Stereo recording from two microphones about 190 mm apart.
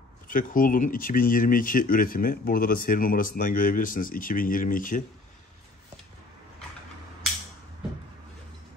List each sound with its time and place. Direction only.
0.3 s speech: 45° left (ahead or behind)